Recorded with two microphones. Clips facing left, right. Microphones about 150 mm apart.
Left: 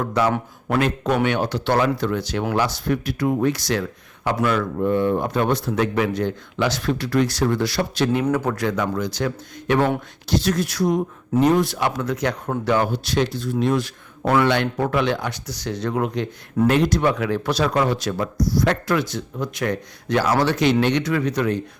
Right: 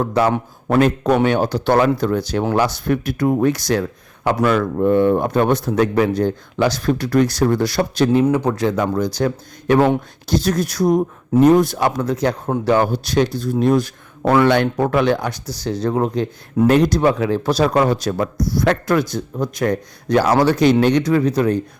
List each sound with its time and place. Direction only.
0.0 s speech: 30° right (ahead or behind)
2.6 s a man's voice: 50° right (ahead or behind); by 21.6 s 35° right (ahead or behind)